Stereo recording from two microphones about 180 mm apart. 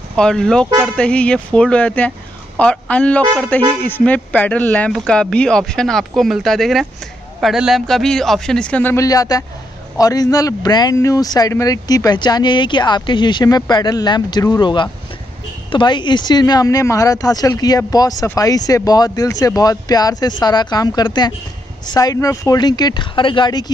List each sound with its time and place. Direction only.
0.1 s a man's voice: 5° left (ahead or behind); by 23.6 s 25° left (ahead or behind)